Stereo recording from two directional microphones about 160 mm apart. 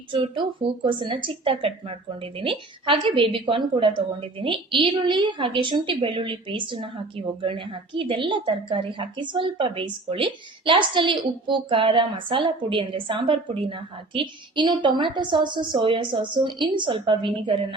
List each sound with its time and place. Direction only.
0.1 s speech: 30° right (ahead or behind)